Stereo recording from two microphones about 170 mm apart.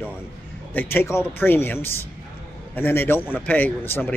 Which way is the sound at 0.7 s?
15° left (ahead or behind).